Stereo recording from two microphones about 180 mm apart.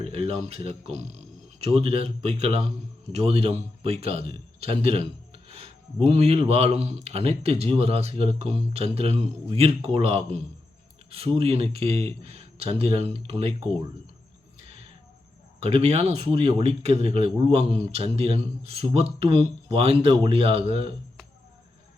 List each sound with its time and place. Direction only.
0.0 s a man's voice: 35° right (ahead or behind)
15.6 s speech: 35° right (ahead or behind)